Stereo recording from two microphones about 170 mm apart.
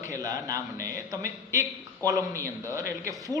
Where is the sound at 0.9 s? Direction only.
20° right (ahead or behind).